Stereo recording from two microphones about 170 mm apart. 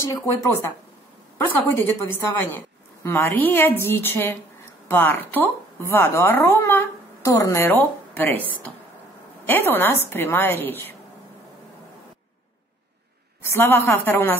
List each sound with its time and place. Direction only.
0.1 s a woman's voice: 15° left (ahead or behind)
1.7 s a woman's voice: 15° left (ahead or behind)
13.4 s a woman's voice: 15° left (ahead or behind)